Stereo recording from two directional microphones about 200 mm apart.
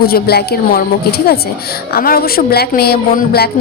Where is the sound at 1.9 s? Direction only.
50° left (ahead or behind).